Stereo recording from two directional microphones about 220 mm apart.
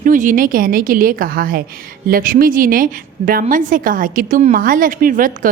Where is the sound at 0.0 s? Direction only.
35° right (ahead or behind).